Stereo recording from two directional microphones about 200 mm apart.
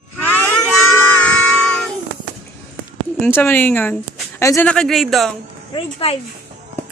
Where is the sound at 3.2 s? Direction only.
10° left (ahead or behind).